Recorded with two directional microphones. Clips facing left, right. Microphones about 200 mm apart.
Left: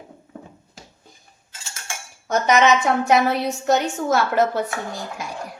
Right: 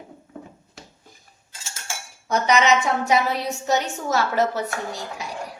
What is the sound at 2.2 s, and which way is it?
A woman's voice, 55° left (ahead or behind).